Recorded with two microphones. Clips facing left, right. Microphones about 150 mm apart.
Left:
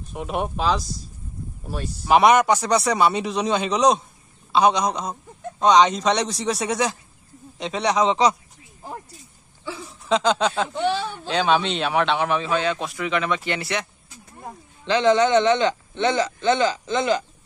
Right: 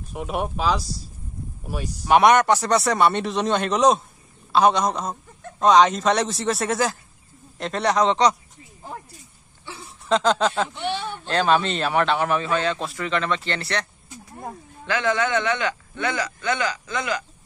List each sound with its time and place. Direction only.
0.1 s a man's voice: centre (ahead or behind)
2.0 s a man's voice: centre (ahead or behind)
10.0 s a man's voice: centre (ahead or behind)
14.9 s speech: 20° left (ahead or behind)